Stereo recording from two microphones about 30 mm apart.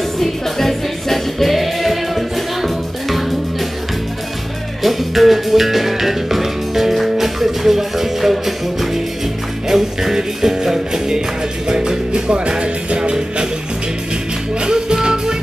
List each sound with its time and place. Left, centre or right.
0.2 s music: centre
4.8 s music: centre; by 12.0 s right
12.1 s music: right
14.6 s music: right